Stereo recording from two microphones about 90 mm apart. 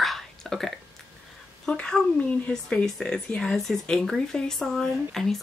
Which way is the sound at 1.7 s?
10° left (ahead or behind).